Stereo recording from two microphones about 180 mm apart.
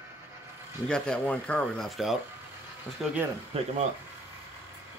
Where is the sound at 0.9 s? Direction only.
5° left (ahead or behind).